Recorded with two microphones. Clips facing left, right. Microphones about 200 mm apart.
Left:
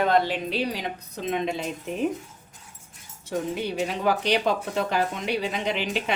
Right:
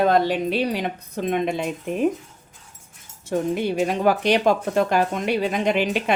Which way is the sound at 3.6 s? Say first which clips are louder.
Right 5 dB; 50° right (ahead or behind).